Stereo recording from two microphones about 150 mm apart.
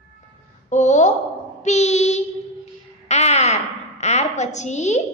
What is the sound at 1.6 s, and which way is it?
Child singing, 50° left (ahead or behind).